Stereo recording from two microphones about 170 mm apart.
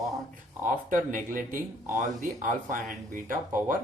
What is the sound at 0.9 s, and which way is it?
Speech, 50° right (ahead or behind).